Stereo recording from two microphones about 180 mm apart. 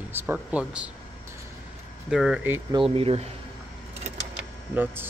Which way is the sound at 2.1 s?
5° right (ahead or behind).